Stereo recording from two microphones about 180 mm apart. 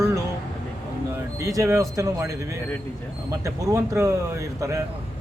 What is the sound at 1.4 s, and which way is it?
A man's voice, 15° right (ahead or behind).